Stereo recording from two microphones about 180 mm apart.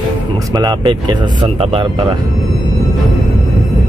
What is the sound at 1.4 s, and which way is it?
Speech, 30° right (ahead or behind).